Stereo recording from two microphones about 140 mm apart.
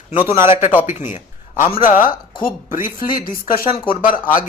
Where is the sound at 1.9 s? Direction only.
75° left (ahead or behind).